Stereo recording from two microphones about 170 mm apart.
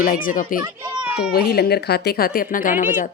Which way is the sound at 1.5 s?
70° left (ahead or behind).